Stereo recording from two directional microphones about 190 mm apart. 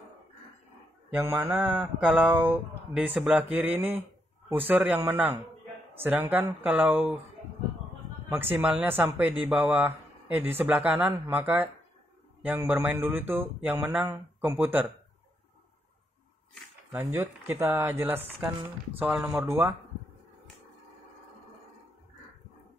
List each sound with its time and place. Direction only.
1.1 s speech: 15° right (ahead or behind)
8.3 s speech: 10° right (ahead or behind)
16.9 s speech: 15° right (ahead or behind)